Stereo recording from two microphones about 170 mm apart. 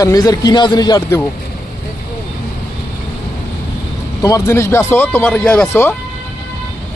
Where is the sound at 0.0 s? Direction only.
20° left (ahead or behind).